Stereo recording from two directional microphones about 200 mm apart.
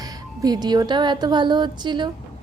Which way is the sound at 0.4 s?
20° right (ahead or behind).